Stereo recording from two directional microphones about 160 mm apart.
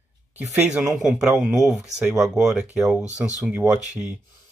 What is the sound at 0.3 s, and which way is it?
Speech, 10° right (ahead or behind).